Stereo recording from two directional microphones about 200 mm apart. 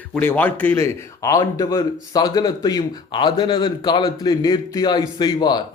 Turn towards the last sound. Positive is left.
turn(degrees=20)  # may be behind; listen again after turning